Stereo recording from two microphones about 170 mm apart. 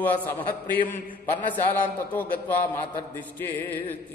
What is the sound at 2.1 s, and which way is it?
Mantra, 10° left (ahead or behind).